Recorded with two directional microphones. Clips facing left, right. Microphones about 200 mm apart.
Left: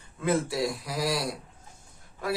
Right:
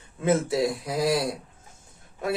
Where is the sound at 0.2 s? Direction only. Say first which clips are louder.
Right 4 dB; 25° right (ahead or behind).